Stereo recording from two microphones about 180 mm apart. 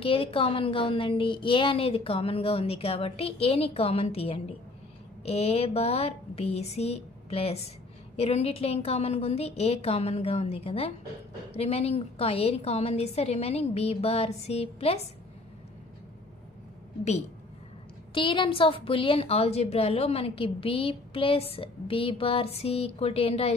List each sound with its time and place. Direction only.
0.0 s a woman's voice: 30° left (ahead or behind)
18.1 s a woman's voice: 30° left (ahead or behind)